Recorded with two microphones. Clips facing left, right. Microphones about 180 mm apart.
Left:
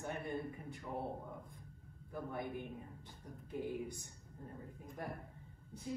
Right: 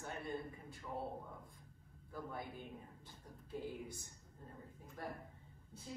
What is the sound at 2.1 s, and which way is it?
A woman's voice, 20° left (ahead or behind).